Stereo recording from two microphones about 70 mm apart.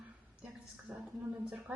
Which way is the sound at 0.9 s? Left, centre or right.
Centre.